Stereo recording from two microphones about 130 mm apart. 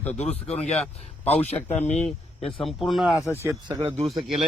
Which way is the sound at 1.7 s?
55° left (ahead or behind).